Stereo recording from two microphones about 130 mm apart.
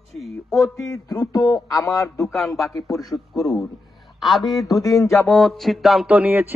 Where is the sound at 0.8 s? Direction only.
25° left (ahead or behind).